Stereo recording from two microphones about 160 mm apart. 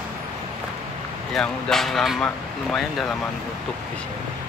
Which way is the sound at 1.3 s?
Centre (ahead or behind).